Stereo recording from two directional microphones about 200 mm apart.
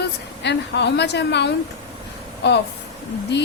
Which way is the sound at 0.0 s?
60° left (ahead or behind).